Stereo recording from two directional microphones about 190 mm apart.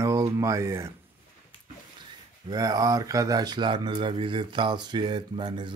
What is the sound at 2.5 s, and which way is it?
Speech, 20° right (ahead or behind).